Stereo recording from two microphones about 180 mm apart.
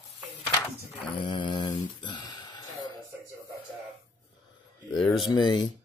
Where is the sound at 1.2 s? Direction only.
25° left (ahead or behind).